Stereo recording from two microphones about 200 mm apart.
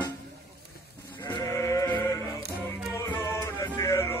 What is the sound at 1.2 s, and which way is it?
Sheep, 20° left (ahead or behind).